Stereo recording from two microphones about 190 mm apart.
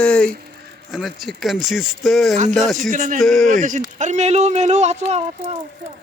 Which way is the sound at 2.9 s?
45° right (ahead or behind).